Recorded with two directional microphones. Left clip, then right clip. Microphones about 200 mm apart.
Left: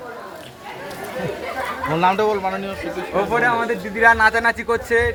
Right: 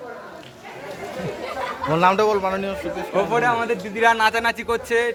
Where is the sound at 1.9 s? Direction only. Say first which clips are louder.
Right 1 dB; 60° right (ahead or behind).